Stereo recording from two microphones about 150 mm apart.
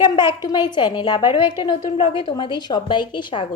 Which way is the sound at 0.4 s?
30° left (ahead or behind).